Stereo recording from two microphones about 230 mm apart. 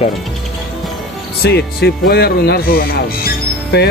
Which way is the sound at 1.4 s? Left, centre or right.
Left.